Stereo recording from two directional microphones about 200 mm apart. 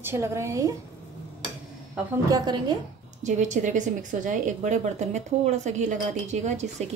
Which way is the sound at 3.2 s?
40° right (ahead or behind).